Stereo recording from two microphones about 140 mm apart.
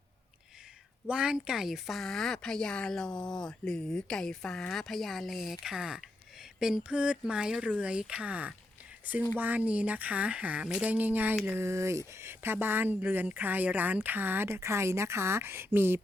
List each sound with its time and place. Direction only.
1.0 s speech: 5° right (ahead or behind)